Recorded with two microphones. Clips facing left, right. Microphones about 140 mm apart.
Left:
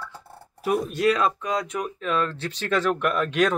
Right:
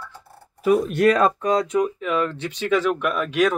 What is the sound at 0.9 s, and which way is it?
Speech, 50° right (ahead or behind).